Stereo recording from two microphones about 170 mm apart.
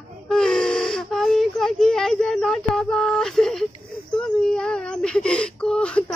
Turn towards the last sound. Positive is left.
turn(degrees=5)  # may be behind; listen again after turning